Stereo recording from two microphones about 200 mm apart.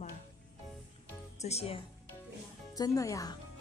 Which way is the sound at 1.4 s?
30° left (ahead or behind).